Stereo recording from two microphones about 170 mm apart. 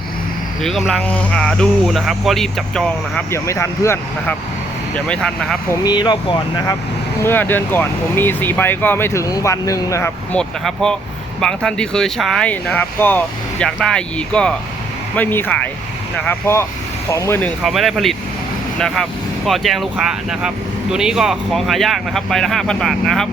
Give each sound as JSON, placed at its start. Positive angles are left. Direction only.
{"t": 0.6, "sound": "speech", "side_deg": 0}
{"t": 3.3, "sound": "speech", "side_deg": 15}
{"t": 4.9, "sound": "speech", "side_deg": 5}
{"t": 5.8, "sound": "speech", "side_deg": 25}
{"t": 7.3, "sound": "speech", "side_deg": 10}
{"t": 10.3, "sound": "speech", "side_deg": 5}
{"t": 17.6, "sound": "speech", "side_deg": 0}
{"t": 19.5, "sound": "speech", "side_deg": 0}